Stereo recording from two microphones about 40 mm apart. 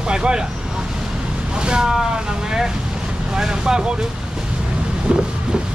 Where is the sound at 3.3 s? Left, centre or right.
Centre.